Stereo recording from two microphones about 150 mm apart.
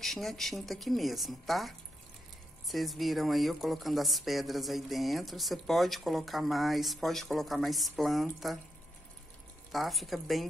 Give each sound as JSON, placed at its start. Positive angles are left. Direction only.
{"t": 0.0, "sound": "speech", "side_deg": 0}
{"t": 9.7, "sound": "speech", "side_deg": 0}